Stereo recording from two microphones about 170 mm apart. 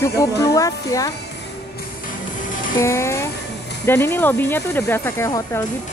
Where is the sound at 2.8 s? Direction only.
15° left (ahead or behind).